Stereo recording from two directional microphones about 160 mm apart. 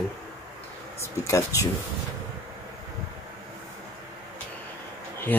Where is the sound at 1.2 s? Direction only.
20° left (ahead or behind).